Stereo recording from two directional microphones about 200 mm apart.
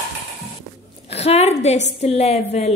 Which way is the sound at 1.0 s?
30° left (ahead or behind).